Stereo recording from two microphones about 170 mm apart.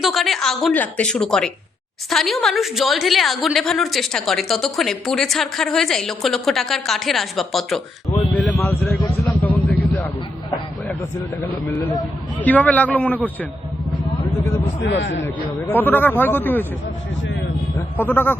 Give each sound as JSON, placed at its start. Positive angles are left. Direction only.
{"t": 0.0, "sound": "a woman's voice", "side_deg": 0}
{"t": 8.4, "sound": "vehicle", "side_deg": 10}
{"t": 12.4, "sound": "speech", "side_deg": 10}
{"t": 14.8, "sound": "a man's voice", "side_deg": 90}
{"t": 15.7, "sound": "speech", "side_deg": 10}
{"t": 17.7, "sound": "speech", "side_deg": 10}